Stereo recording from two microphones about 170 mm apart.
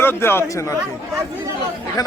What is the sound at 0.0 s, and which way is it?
Speech, 15° left (ahead or behind).